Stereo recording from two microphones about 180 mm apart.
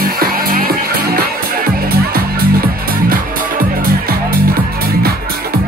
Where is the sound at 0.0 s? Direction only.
55° right (ahead or behind).